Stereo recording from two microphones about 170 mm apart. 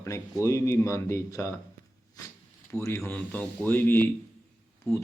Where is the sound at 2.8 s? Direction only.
15° left (ahead or behind).